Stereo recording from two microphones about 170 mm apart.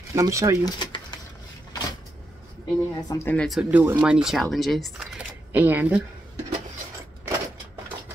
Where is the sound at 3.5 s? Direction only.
5° right (ahead or behind).